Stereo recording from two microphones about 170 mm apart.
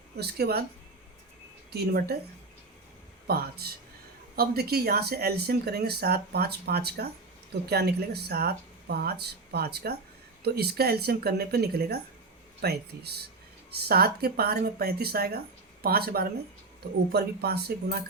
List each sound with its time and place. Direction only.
0.2 s speech: 70° right (ahead or behind)
1.7 s speech: 70° right (ahead or behind)
3.2 s speech: 65° right (ahead or behind)